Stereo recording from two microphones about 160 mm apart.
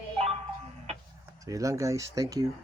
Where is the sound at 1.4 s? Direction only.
20° right (ahead or behind).